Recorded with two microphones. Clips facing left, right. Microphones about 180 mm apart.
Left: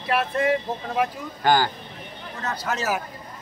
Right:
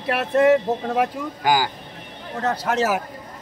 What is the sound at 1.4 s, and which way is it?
Speech, 10° right (ahead or behind).